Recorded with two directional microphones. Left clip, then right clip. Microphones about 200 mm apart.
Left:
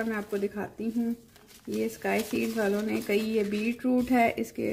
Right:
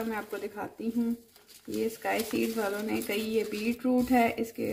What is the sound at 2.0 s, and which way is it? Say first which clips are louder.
Speech: left 2 dB; 55° left (ahead or behind).